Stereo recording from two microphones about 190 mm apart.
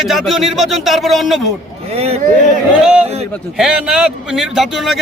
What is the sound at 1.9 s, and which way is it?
Speech, 35° right (ahead or behind).